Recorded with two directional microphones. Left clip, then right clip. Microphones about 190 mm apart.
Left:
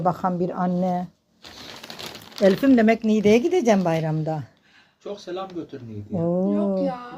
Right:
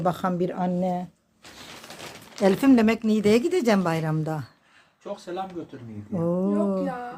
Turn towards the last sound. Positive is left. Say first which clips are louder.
# left 2 dB
turn(degrees=-15)  # may be behind; listen again after turning